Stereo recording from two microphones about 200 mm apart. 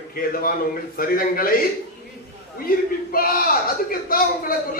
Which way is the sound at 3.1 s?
45° left (ahead or behind).